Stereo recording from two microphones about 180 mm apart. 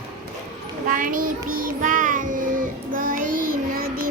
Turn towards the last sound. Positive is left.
turn(degrees=-55)  # may be behind; listen again after turning